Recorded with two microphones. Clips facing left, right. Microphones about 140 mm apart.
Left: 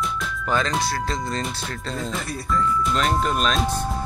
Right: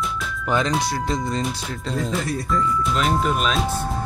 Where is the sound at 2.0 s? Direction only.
Centre (ahead or behind).